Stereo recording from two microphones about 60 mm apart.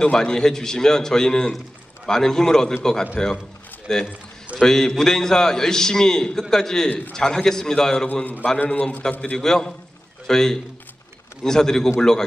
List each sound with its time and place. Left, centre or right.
0.0 s a man's voice: centre
8.1 s a man's voice: left
9.2 s a man's voice: centre